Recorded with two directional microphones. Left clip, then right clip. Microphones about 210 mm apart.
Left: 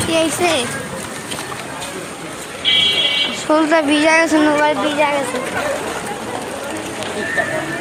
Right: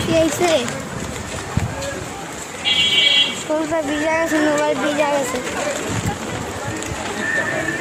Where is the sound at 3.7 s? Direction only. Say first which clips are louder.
Left 7 dB; 20° left (ahead or behind).